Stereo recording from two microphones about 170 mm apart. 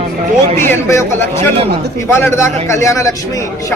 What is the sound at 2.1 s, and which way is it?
A man's voice, 15° left (ahead or behind).